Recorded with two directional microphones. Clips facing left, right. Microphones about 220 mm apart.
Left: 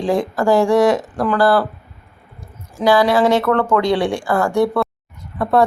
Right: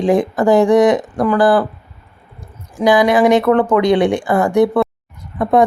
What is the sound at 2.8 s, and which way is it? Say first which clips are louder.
Speech: right 2 dB; 20° right (ahead or behind).